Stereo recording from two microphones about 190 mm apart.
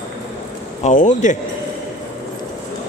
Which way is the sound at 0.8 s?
40° left (ahead or behind).